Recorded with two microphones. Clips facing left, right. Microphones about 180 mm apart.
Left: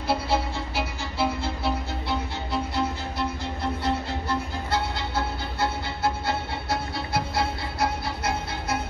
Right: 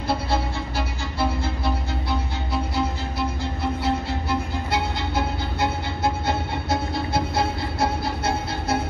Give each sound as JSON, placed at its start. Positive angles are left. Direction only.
{"t": 0.1, "sound": "music", "side_deg": 5}